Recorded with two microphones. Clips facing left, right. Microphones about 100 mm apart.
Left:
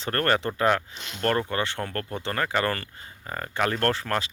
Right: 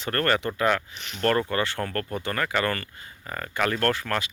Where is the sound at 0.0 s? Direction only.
30° left (ahead or behind).